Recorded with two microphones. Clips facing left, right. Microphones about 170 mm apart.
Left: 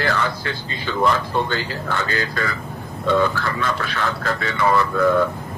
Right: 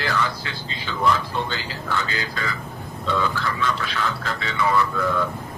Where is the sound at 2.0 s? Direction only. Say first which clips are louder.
Left 5 dB; 55° left (ahead or behind).